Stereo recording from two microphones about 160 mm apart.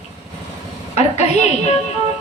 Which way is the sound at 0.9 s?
45° left (ahead or behind).